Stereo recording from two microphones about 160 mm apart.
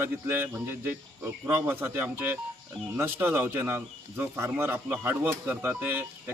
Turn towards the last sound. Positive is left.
turn(degrees=-15)  # may be behind; listen again after turning